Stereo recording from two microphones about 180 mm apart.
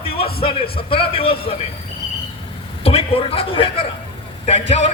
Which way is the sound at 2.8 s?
35° left (ahead or behind).